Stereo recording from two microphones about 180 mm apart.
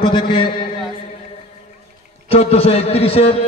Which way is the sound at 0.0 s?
25° left (ahead or behind).